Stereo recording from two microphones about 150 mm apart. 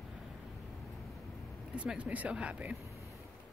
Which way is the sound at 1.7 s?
10° right (ahead or behind).